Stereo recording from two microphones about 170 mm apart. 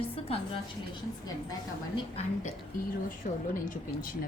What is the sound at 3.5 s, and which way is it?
Speech, 50° left (ahead or behind).